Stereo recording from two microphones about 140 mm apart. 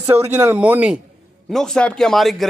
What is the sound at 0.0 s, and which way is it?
Speech, 15° right (ahead or behind).